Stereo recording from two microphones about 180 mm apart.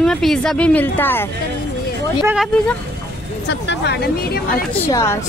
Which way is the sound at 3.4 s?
75° left (ahead or behind).